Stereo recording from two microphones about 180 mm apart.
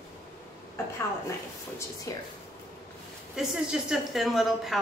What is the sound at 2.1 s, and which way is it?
Speech, 15° left (ahead or behind).